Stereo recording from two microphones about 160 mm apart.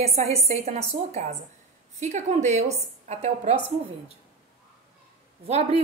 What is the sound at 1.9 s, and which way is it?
A woman's voice, 50° right (ahead or behind).